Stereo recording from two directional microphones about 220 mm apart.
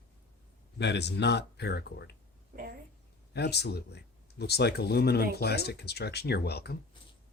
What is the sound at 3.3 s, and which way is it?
Speech, 50° left (ahead or behind).